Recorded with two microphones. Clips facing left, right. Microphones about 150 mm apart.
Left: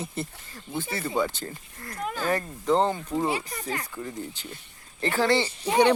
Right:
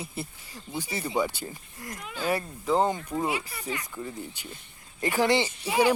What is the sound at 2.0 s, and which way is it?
Speech, 45° left (ahead or behind).